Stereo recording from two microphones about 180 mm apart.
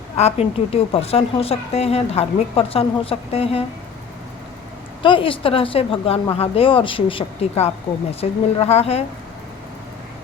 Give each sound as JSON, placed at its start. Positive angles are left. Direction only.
{"t": 0.2, "sound": "a woman's voice", "side_deg": 35}
{"t": 5.0, "sound": "a woman's voice", "side_deg": 30}